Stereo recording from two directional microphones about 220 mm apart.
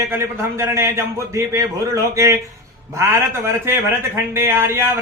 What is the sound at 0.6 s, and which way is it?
A man's voice, 10° right (ahead or behind).